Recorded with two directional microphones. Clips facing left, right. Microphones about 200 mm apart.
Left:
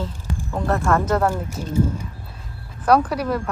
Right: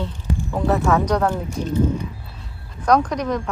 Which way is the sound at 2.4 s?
5° left (ahead or behind).